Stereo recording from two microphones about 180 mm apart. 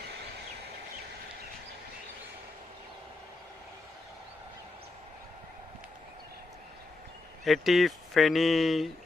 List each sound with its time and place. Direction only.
7.4 s speech: centre (ahead or behind)